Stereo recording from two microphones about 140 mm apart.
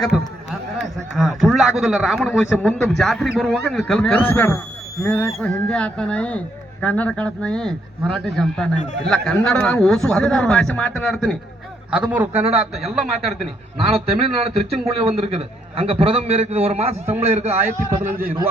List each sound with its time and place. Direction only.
0.1 s a man's voice: 5° right (ahead or behind)
11.9 s a man's voice: 10° right (ahead or behind)
13.7 s a man's voice: 45° right (ahead or behind)
18.0 s a man's voice: 90° right